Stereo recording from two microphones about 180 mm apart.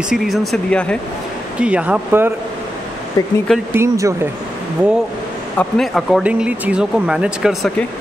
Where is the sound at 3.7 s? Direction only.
15° right (ahead or behind).